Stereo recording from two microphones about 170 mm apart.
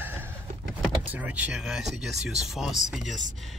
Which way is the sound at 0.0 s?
10° right (ahead or behind).